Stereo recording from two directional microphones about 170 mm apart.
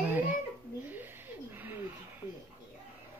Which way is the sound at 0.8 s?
10° right (ahead or behind).